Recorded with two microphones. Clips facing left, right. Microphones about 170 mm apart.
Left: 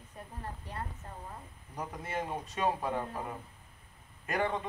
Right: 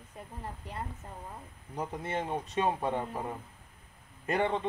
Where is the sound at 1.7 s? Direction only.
25° right (ahead or behind).